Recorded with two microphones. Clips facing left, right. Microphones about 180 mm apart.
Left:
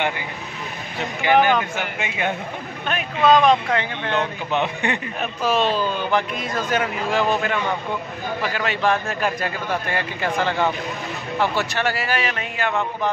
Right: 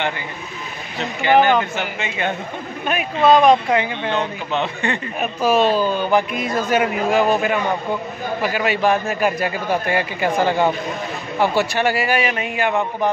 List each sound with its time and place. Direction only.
0.9 s speech: 10° left (ahead or behind)
2.9 s a man's voice: 10° right (ahead or behind)
4.5 s speech: 15° left (ahead or behind)
5.2 s a man's voice: 10° right (ahead or behind)